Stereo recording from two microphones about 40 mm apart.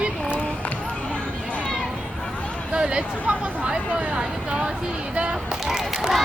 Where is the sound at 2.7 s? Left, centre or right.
Right.